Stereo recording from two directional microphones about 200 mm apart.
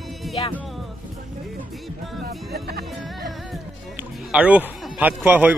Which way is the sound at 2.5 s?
50° right (ahead or behind).